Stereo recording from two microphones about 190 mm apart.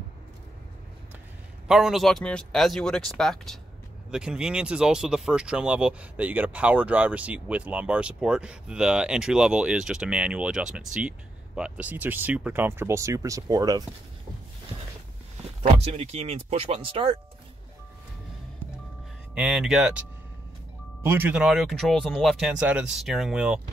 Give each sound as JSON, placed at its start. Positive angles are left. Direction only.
{"t": 1.7, "sound": "speech", "side_deg": 0}
{"t": 15.6, "sound": "speech", "side_deg": -30}
{"t": 19.3, "sound": "speech", "side_deg": 0}
{"t": 21.0, "sound": "speech", "side_deg": -10}